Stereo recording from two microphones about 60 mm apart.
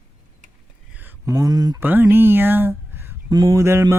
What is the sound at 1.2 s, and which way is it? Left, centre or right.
Speech, right.